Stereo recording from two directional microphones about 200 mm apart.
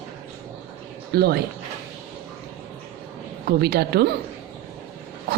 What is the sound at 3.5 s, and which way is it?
Speech, 55° right (ahead or behind).